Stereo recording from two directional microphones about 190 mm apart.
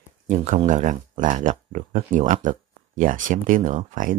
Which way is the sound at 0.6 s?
40° right (ahead or behind).